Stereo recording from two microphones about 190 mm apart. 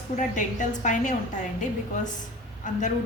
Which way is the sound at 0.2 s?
40° left (ahead or behind).